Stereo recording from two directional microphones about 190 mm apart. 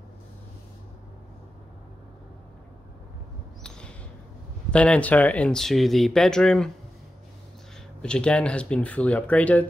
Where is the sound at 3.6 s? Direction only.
5° left (ahead or behind).